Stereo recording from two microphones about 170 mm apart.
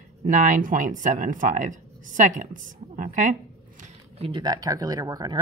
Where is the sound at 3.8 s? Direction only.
35° right (ahead or behind).